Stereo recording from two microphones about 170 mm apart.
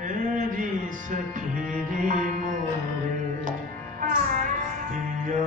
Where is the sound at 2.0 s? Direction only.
50° right (ahead or behind).